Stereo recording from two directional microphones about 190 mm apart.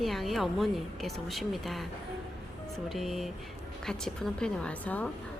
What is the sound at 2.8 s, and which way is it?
Speech, centre (ahead or behind).